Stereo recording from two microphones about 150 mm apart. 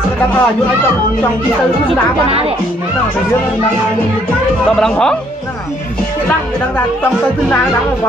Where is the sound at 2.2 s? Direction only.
40° right (ahead or behind).